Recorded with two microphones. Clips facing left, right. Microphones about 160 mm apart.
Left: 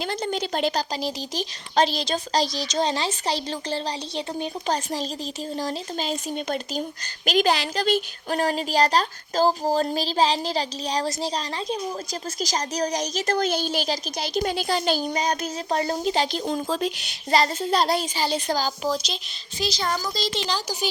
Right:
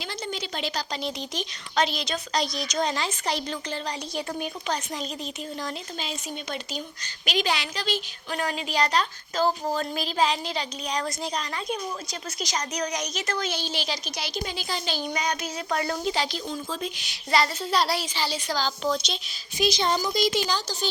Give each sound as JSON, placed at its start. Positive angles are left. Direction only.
{"t": 0.0, "sound": "a child's voice", "side_deg": 50}
{"t": 0.8, "sound": "a child's voice", "side_deg": 35}
{"t": 13.5, "sound": "a child's voice", "side_deg": 50}
{"t": 15.1, "sound": "speech", "side_deg": 30}
{"t": 16.1, "sound": "a child's voice", "side_deg": 50}
{"t": 18.8, "sound": "speech", "side_deg": 5}
{"t": 19.5, "sound": "a woman's voice", "side_deg": -20}